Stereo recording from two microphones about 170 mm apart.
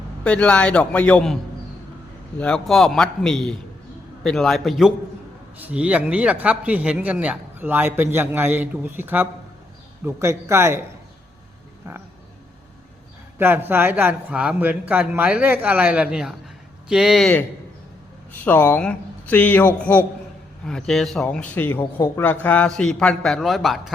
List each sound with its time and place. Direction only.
0.3 s speech: 5° left (ahead or behind)
2.4 s speech: 5° left (ahead or behind); by 10.8 s 15° right (ahead or behind)
13.4 s speech: 10° right (ahead or behind)